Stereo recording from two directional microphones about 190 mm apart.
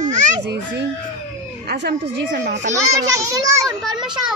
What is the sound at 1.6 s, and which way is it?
Speech, 65° right (ahead or behind).